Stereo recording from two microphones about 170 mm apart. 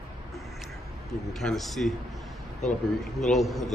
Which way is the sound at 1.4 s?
Centre (ahead or behind).